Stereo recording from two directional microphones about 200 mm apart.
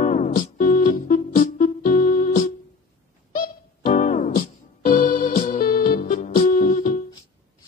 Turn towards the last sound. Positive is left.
turn(degrees=40)  # may be behind; listen again after turning